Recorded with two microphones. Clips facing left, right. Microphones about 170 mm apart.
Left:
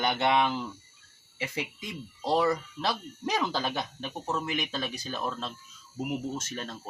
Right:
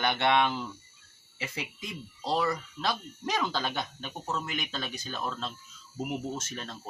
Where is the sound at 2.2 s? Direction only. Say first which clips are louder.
Left 3 dB; 20° left (ahead or behind).